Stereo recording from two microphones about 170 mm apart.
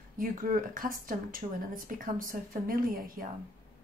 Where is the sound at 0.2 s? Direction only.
55° right (ahead or behind).